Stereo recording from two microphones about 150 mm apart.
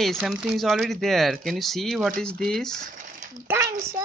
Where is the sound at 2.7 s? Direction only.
65° right (ahead or behind).